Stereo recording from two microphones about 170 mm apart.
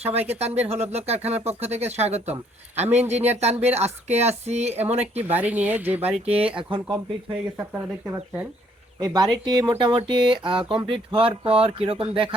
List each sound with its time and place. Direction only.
0.3 s speech: 40° right (ahead or behind)
5.3 s speech: 10° right (ahead or behind)
6.1 s speech: 35° right (ahead or behind)
7.7 s speech: 10° right (ahead or behind)
9.0 s speech: 25° right (ahead or behind)